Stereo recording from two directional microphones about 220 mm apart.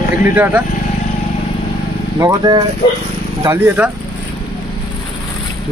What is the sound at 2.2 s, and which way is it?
Speech, 20° right (ahead or behind).